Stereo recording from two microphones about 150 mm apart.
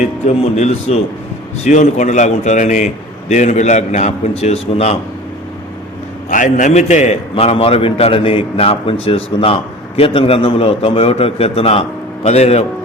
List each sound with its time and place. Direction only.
0.0 s a man's voice: 50° left (ahead or behind)
6.3 s a man's voice: 60° left (ahead or behind)